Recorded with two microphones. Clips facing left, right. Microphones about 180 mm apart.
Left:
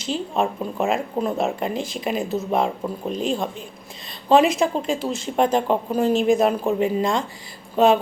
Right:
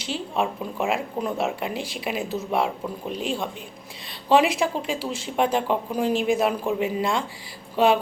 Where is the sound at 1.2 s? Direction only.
25° left (ahead or behind).